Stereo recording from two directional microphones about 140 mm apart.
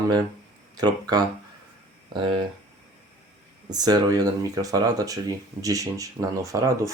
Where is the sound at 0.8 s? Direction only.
30° right (ahead or behind).